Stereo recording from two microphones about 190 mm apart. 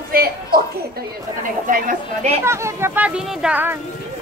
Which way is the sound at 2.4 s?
15° right (ahead or behind).